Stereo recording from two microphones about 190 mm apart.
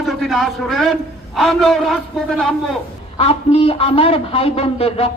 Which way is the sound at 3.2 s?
30° left (ahead or behind).